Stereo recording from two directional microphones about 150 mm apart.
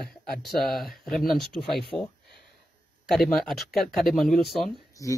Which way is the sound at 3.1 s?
Centre (ahead or behind).